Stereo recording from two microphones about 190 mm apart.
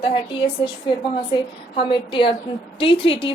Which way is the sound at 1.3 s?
25° left (ahead or behind).